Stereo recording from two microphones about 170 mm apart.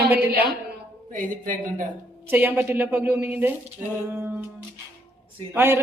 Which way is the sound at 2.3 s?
10° right (ahead or behind).